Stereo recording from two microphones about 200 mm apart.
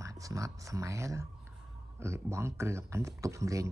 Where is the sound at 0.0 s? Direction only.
15° right (ahead or behind).